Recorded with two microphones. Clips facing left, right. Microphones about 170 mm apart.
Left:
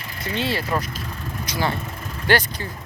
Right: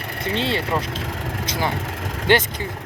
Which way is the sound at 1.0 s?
90° right.